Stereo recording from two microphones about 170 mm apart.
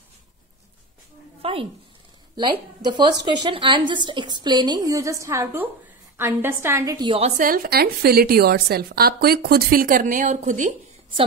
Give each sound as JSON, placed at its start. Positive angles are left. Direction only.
{"t": 1.4, "sound": "speech", "side_deg": -35}
{"t": 2.8, "sound": "a woman's voice", "side_deg": -25}
{"t": 7.2, "sound": "a woman's voice", "side_deg": -55}